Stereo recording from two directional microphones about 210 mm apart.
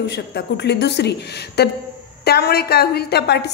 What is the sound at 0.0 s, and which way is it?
A woman's voice, 55° left (ahead or behind).